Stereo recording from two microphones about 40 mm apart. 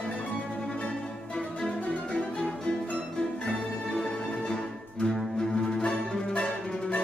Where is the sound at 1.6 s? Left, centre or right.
Centre.